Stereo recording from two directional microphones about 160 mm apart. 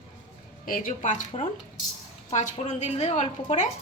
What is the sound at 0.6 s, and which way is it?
Speech, 60° left (ahead or behind).